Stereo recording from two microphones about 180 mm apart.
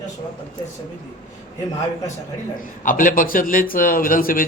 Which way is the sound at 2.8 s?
50° left (ahead or behind).